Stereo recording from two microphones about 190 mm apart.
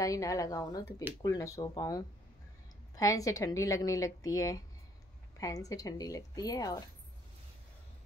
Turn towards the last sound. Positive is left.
turn(degrees=20)  # may be behind; listen again after turning